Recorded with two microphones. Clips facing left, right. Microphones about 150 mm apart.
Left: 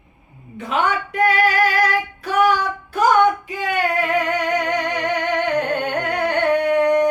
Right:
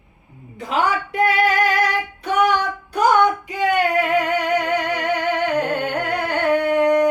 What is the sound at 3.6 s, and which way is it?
Music, 15° right (ahead or behind).